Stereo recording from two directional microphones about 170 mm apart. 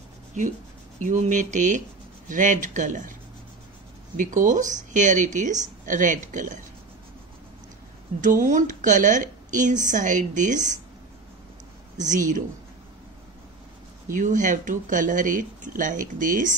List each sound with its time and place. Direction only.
0.3 s speech: 45° right (ahead or behind)
4.2 s speech: 50° right (ahead or behind)
8.2 s speech: 50° right (ahead or behind)
12.1 s speech: 50° right (ahead or behind)
14.1 s speech: 50° right (ahead or behind)